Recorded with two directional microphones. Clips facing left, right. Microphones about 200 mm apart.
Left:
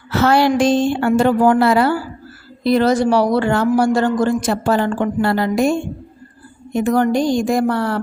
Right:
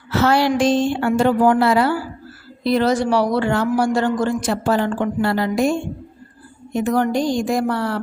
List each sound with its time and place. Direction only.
0.1 s a woman's voice: 50° left (ahead or behind)
6.7 s a woman's voice: 50° left (ahead or behind)